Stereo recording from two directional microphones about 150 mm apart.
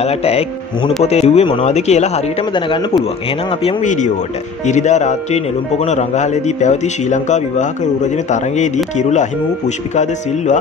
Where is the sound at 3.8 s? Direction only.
55° left (ahead or behind).